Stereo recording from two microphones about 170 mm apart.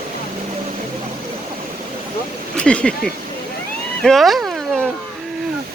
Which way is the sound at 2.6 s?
5° left (ahead or behind).